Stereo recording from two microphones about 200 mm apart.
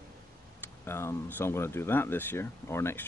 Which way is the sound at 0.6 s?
10° left (ahead or behind).